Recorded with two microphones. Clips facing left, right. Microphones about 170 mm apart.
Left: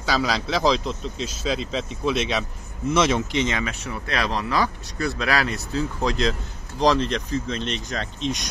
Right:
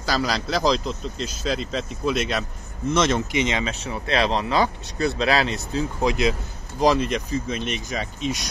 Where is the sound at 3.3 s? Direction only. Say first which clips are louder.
Even; 15° right (ahead or behind).